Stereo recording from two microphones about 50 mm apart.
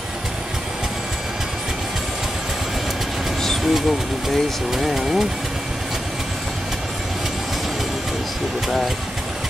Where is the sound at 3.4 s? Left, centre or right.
Centre.